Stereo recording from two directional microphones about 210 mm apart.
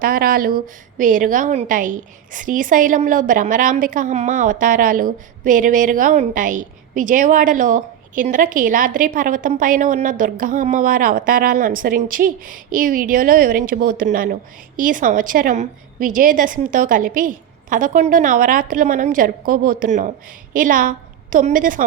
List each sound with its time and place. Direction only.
0.0 s a woman's voice: 45° right (ahead or behind)